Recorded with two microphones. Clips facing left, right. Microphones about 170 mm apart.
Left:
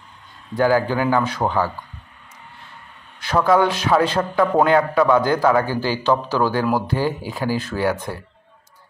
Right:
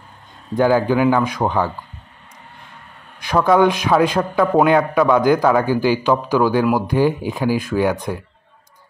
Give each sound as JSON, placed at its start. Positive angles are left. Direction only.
{"t": 0.6, "sound": "a man's voice", "side_deg": -20}
{"t": 3.2, "sound": "a man's voice", "side_deg": -15}